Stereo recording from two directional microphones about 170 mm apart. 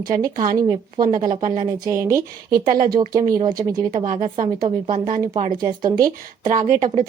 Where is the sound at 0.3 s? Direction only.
55° right (ahead or behind).